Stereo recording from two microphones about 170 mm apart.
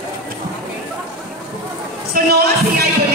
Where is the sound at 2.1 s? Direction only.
60° right (ahead or behind).